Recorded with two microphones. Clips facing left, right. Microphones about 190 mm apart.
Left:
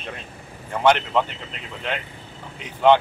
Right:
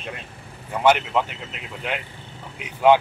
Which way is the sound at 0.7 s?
5° right (ahead or behind).